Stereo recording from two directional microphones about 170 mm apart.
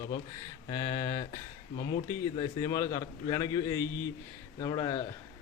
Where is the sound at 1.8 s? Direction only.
70° left (ahead or behind).